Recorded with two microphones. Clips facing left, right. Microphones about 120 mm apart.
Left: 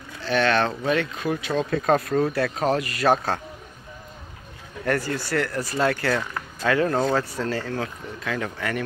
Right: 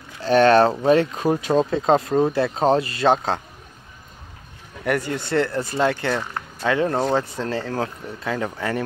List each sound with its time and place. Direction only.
0.2 s speech: 40° right (ahead or behind); by 3.3 s 25° right (ahead or behind)
4.8 s speech: 20° right (ahead or behind)